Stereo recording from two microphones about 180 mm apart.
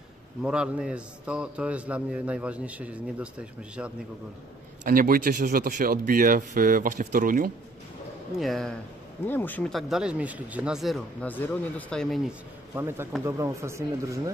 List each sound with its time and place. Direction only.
0.4 s a man's voice: 5° right (ahead or behind)
4.8 s speech: 50° right (ahead or behind)
8.4 s speech: centre (ahead or behind)
12.7 s a man's voice: 15° right (ahead or behind)